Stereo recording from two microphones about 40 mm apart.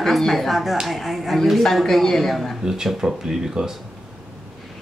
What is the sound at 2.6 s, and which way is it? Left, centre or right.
Speech, centre.